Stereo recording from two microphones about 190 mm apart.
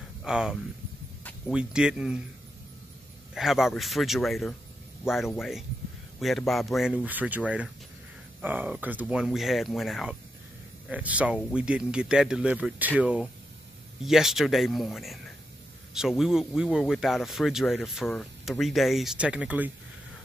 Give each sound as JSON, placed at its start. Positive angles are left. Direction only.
{"t": 0.2, "sound": "speech", "side_deg": -5}
{"t": 3.3, "sound": "speech", "side_deg": 0}